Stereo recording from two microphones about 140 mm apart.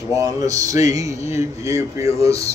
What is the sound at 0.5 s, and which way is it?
A man's voice, 25° right (ahead or behind).